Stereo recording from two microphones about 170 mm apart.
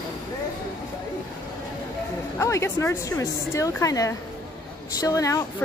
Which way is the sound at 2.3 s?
15° left (ahead or behind).